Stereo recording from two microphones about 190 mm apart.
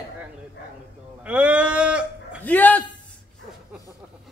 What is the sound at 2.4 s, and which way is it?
Speech, 10° left (ahead or behind).